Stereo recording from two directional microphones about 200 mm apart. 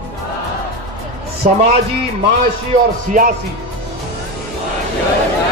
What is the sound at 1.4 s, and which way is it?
Speech, 35° right (ahead or behind).